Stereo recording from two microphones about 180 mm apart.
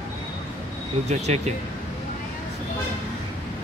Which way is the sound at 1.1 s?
40° right (ahead or behind).